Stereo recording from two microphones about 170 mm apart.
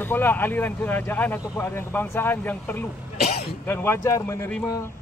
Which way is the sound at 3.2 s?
65° left (ahead or behind).